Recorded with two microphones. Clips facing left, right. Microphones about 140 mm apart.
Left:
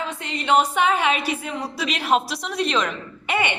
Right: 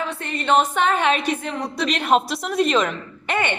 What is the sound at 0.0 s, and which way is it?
A woman's voice, 15° left (ahead or behind).